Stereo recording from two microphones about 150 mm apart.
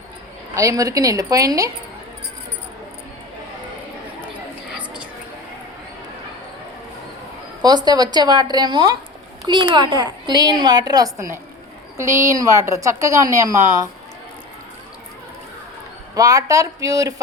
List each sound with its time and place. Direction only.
0.5 s a woman's voice: 20° right (ahead or behind)
7.6 s a woman's voice: 30° right (ahead or behind)
16.1 s a woman's voice: 25° right (ahead or behind)